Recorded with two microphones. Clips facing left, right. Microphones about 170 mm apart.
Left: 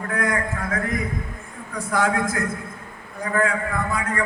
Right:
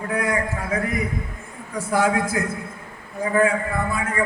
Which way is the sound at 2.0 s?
20° right (ahead or behind).